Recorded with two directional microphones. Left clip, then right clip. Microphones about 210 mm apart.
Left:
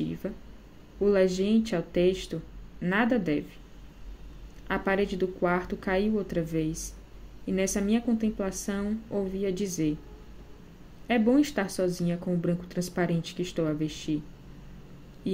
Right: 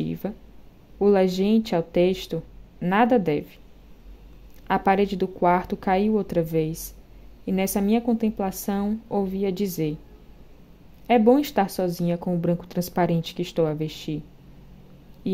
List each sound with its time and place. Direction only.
0.0 s a sound: 35° right (ahead or behind)
0.9 s speech: 35° right (ahead or behind)
4.6 s speech: 40° right (ahead or behind)
11.1 s speech: 35° right (ahead or behind)